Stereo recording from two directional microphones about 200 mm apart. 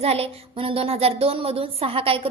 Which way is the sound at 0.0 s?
30° right (ahead or behind).